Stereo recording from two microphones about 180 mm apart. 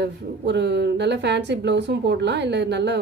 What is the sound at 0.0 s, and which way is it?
Speech, 70° right (ahead or behind).